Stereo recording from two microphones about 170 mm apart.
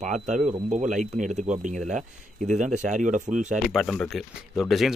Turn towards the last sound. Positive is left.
turn(degrees=0)  # may be behind; listen again after turning